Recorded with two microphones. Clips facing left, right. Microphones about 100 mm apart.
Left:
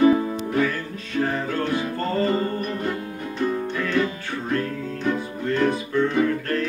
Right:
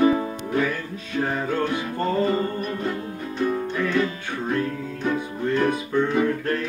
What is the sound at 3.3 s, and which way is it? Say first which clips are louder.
Music: even; 5° right (ahead or behind).